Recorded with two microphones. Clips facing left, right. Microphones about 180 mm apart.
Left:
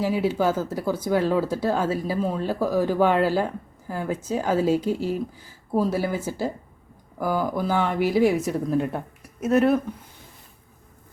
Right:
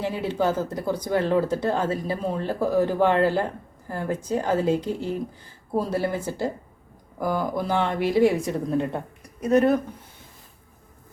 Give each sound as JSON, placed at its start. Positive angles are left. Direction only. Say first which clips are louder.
{"t": 0.0, "sound": "speech", "louder": "left 2 dB", "side_deg": 5}
{"t": 2.4, "sound": "speech", "louder": "right 3 dB", "side_deg": -20}
{"t": 3.0, "sound": "a woman's voice", "louder": "left 2 dB", "side_deg": 5}